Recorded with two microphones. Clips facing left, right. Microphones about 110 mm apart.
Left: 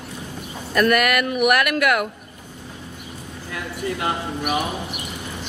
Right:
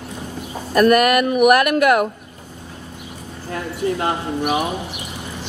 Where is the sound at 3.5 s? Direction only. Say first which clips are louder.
Right 5 dB; 35° right (ahead or behind).